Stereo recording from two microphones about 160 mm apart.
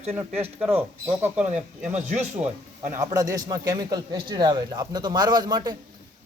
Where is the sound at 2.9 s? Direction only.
20° right (ahead or behind).